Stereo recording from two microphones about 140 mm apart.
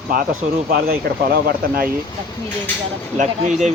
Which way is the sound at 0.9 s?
90° right.